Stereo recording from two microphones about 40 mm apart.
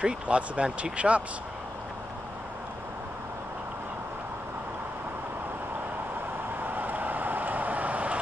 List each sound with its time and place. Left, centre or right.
0.0 s speech: right
6.6 s vehicle: right